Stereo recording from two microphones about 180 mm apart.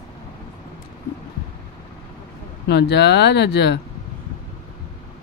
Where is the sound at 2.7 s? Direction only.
70° left (ahead or behind).